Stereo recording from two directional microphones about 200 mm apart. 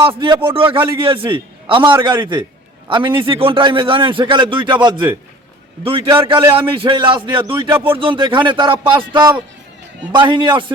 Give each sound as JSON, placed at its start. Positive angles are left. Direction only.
{"t": 0.0, "sound": "a man's voice", "side_deg": -25}